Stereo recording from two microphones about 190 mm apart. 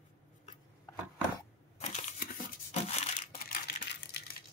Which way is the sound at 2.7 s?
35° left (ahead or behind).